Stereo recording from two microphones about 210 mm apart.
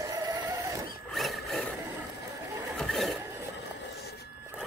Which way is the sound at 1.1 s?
Centre (ahead or behind).